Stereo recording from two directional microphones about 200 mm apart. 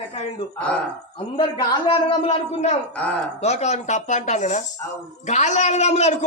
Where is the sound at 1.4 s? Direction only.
25° left (ahead or behind).